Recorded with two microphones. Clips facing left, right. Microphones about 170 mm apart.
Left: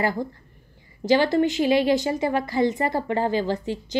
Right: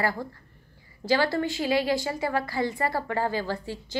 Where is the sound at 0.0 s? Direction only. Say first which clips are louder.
Left 4 dB; 20° left (ahead or behind).